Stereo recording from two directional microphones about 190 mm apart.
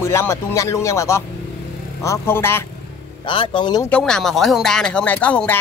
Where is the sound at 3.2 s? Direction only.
25° left (ahead or behind).